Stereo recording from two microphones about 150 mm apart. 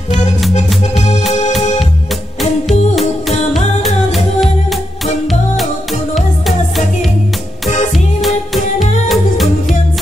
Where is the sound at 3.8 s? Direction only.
Centre (ahead or behind).